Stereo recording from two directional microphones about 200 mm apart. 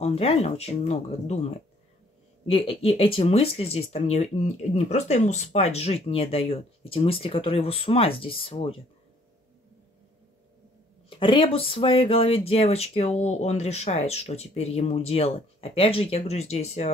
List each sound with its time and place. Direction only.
0.0 s speech: 30° left (ahead or behind)
2.4 s speech: 30° left (ahead or behind)
11.1 s speech: 25° left (ahead or behind)